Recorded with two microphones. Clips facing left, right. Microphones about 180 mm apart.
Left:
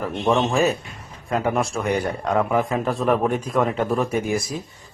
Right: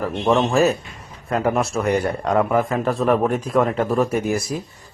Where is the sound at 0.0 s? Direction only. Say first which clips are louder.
Right 2 dB; centre (ahead or behind).